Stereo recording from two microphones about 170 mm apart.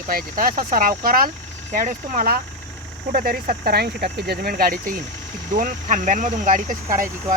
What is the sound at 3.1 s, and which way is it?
Speech, 60° right (ahead or behind).